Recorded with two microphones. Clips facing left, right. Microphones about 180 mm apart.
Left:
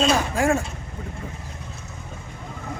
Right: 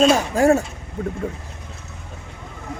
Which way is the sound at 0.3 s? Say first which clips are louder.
Right 8 dB; 40° right (ahead or behind).